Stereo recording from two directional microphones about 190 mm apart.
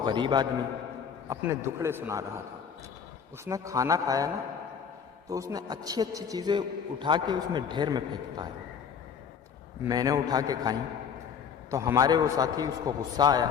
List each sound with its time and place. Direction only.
0.0 s a man's voice: 25° right (ahead or behind)
3.4 s a man's voice: 15° right (ahead or behind)
5.3 s a man's voice: 15° right (ahead or behind)
9.8 s a man's voice: 20° right (ahead or behind)